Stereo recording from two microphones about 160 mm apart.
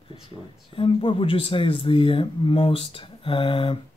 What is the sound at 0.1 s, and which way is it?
Speech, 30° left (ahead or behind).